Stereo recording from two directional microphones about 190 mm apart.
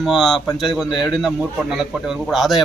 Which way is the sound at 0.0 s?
Centre (ahead or behind).